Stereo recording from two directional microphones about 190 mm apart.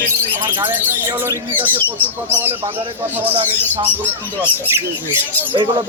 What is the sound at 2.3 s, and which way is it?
Speech, 10° right (ahead or behind).